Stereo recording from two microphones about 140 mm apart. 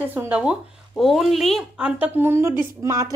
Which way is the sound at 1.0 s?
Centre (ahead or behind).